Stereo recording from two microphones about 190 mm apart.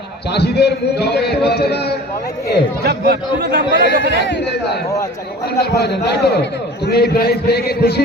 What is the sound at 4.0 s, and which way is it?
A man's voice, 65° left (ahead or behind).